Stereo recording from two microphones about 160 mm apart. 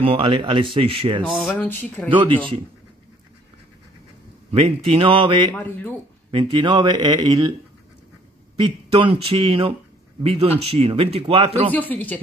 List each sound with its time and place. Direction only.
0.0 s speech: 35° right (ahead or behind)
1.3 s speech: 5° right (ahead or behind)
1.6 s speech: 10° left (ahead or behind)
2.0 s speech: 30° right (ahead or behind)
4.5 s speech: 35° right (ahead or behind)
5.5 s speech: 10° left (ahead or behind)
6.3 s speech: 30° right (ahead or behind)
8.5 s speech: 30° right (ahead or behind)
11.7 s speech: 10° left (ahead or behind)